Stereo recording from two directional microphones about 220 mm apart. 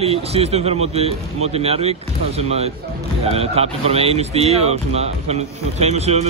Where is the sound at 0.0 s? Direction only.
30° right (ahead or behind).